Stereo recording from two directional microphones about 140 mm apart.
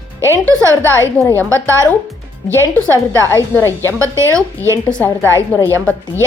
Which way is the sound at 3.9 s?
20° right (ahead or behind).